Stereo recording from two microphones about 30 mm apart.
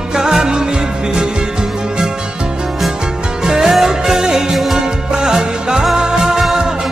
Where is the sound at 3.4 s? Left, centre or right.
Centre.